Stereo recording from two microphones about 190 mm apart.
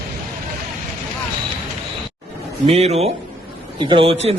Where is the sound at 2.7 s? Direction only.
35° right (ahead or behind).